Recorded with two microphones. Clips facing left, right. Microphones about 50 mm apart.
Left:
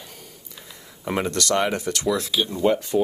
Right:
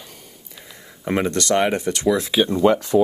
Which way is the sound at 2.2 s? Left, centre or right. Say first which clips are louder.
Right 6 dB; right.